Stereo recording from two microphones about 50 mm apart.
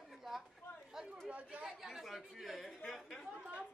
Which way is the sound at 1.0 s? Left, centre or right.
Centre.